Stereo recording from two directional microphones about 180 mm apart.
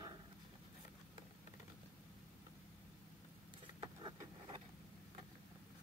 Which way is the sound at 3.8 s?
25° right (ahead or behind).